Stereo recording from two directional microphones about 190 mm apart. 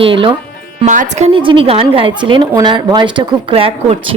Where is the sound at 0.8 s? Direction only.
40° right (ahead or behind).